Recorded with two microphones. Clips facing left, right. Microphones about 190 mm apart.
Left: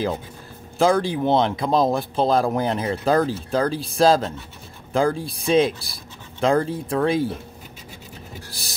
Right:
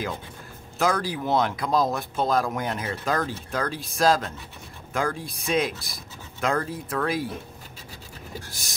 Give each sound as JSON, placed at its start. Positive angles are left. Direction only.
{"t": 0.7, "sound": "speech", "side_deg": 25}